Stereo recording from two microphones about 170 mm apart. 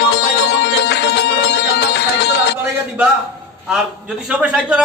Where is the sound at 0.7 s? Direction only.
80° left.